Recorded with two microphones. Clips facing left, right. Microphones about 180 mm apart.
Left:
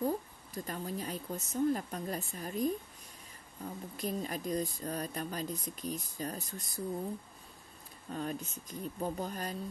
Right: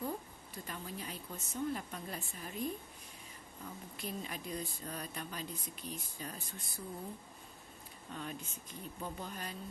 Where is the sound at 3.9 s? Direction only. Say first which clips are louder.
Left 7 dB; 40° left (ahead or behind).